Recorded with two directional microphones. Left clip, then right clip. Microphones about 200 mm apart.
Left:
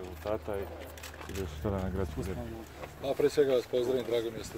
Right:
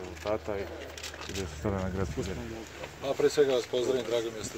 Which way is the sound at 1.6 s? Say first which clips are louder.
Right 2 dB; 15° right (ahead or behind).